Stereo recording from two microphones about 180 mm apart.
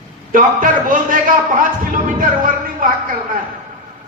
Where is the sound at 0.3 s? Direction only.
45° right (ahead or behind).